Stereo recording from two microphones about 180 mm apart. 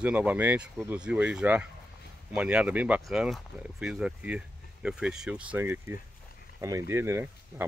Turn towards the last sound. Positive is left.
turn(degrees=-10)  # may be behind; listen again after turning